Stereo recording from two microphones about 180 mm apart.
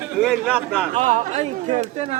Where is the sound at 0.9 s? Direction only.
40° right (ahead or behind).